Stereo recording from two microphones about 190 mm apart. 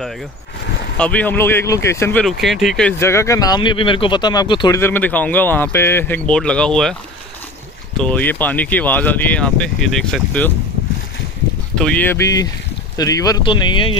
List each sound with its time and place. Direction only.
0.9 s speech: 5° left (ahead or behind)
3.0 s speech: 15° left (ahead or behind)
4.7 s speech: 10° left (ahead or behind)
8.0 s speech: 10° left (ahead or behind)
11.7 s speech: 5° left (ahead or behind); by 13.9 s 25° left (ahead or behind)